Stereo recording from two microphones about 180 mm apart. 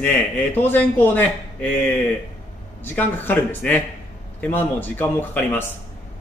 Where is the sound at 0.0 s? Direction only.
10° left (ahead or behind).